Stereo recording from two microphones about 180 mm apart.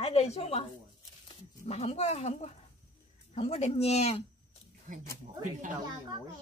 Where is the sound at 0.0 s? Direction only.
35° left (ahead or behind).